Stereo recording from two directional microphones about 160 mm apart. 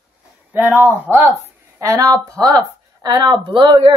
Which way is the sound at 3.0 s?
25° right (ahead or behind).